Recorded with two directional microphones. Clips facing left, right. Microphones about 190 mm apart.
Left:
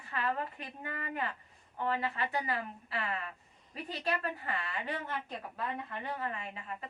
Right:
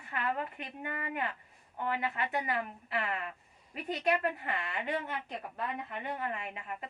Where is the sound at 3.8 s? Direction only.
20° right (ahead or behind).